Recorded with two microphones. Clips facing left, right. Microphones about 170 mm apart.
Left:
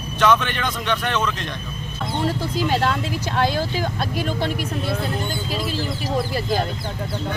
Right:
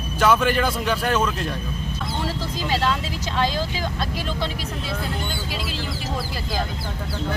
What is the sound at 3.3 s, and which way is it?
Speech, 50° left (ahead or behind).